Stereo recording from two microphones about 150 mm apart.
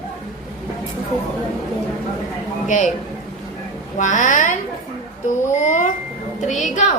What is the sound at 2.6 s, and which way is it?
Speech, 55° left (ahead or behind).